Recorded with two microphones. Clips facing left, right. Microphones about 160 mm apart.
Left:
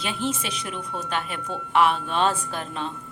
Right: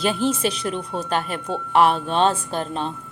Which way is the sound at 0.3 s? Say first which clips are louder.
Right 7 dB; 30° right (ahead or behind).